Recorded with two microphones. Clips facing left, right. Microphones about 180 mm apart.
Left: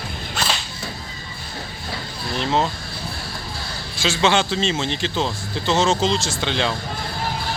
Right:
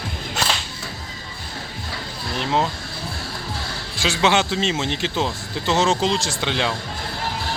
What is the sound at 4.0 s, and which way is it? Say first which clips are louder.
Speech: even; 10° right (ahead or behind).